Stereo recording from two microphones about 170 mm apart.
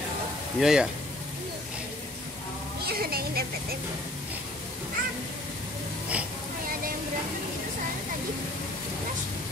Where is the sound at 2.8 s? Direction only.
65° right (ahead or behind).